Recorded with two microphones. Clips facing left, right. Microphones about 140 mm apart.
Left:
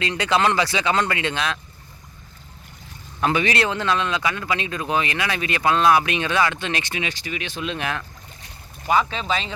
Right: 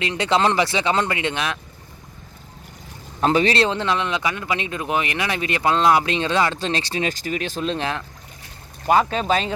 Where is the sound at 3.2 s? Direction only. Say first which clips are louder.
Right 3 dB; 30° right (ahead or behind).